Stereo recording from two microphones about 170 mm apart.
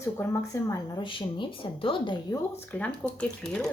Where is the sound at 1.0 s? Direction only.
30° left (ahead or behind).